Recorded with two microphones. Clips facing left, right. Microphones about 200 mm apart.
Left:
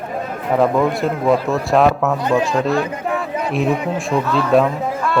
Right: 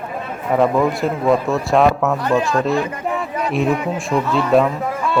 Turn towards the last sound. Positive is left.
turn(degrees=0)  # may be behind; listen again after turning